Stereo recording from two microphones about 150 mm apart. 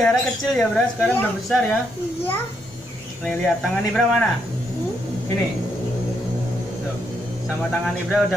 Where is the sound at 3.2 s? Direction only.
Centre (ahead or behind).